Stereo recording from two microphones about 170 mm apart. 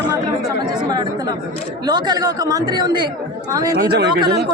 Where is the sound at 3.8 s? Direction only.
65° right (ahead or behind).